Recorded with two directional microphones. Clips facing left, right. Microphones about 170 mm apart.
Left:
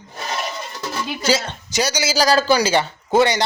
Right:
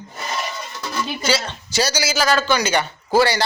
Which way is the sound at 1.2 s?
45° left (ahead or behind).